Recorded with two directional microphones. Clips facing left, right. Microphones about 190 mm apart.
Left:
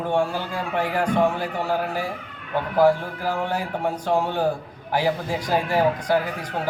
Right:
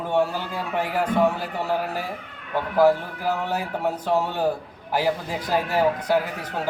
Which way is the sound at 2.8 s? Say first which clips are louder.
Even; 5° right (ahead or behind).